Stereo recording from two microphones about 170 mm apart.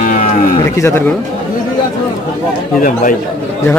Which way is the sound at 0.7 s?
15° left (ahead or behind).